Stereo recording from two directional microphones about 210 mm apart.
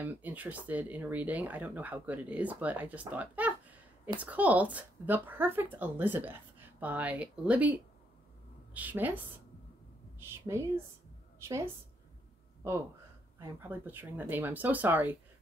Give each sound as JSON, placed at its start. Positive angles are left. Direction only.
{"t": 0.0, "sound": "a woman's voice", "side_deg": -10}
{"t": 13.4, "sound": "speech", "side_deg": -10}